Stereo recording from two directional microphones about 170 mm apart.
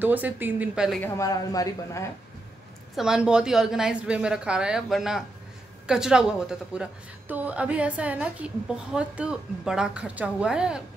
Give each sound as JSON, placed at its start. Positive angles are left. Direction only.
{"t": 0.0, "sound": "speech", "side_deg": -10}
{"t": 1.0, "sound": "speech", "side_deg": 15}
{"t": 3.0, "sound": "a woman's voice", "side_deg": -5}